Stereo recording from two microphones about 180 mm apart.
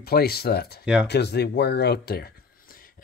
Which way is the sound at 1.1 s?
65° left (ahead or behind).